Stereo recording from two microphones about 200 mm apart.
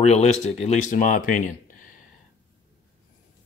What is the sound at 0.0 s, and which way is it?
Speech, 35° left (ahead or behind).